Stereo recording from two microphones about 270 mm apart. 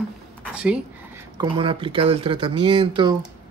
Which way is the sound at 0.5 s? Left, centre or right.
Centre.